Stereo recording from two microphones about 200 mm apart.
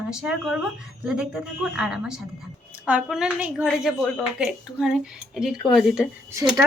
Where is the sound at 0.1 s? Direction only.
5° right (ahead or behind).